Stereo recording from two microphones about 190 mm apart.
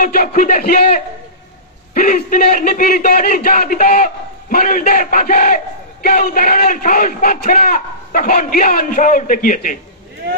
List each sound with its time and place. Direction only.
0.0 s a man's voice: 45° left (ahead or behind)
2.0 s a man's voice: 50° left (ahead or behind)
10.2 s speech: 55° right (ahead or behind)